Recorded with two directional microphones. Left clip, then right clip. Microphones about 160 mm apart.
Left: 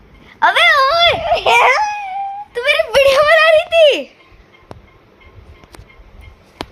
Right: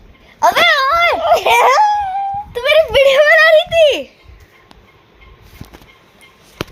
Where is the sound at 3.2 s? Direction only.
5° right (ahead or behind).